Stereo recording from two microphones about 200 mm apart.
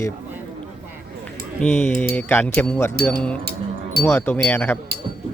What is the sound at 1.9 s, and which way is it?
Speech, 10° left (ahead or behind).